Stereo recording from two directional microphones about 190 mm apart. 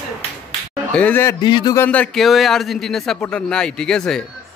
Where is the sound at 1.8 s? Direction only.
5° left (ahead or behind).